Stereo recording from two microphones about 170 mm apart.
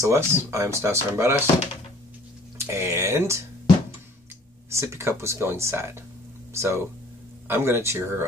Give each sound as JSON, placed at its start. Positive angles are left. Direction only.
{"t": 0.0, "sound": "speech", "side_deg": -20}
{"t": 2.5, "sound": "speech", "side_deg": -15}
{"t": 4.6, "sound": "speech", "side_deg": -15}